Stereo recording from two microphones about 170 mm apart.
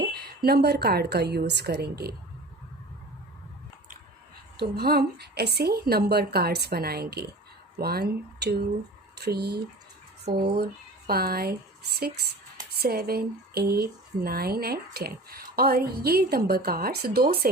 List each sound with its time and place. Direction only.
0.0 s a woman's voice: 70° right (ahead or behind)
4.5 s a woman's voice: 70° right (ahead or behind)
12.8 s speech: 65° right (ahead or behind)